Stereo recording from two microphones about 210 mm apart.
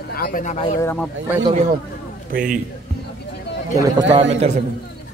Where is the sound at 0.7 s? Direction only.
5° left (ahead or behind).